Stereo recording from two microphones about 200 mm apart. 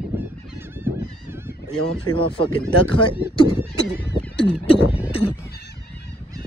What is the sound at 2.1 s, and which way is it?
Speech, 25° left (ahead or behind).